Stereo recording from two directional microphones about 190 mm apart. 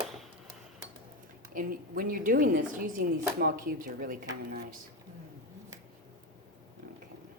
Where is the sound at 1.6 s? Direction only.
50° right (ahead or behind).